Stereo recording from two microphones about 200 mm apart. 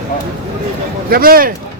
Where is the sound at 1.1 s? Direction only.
50° right (ahead or behind).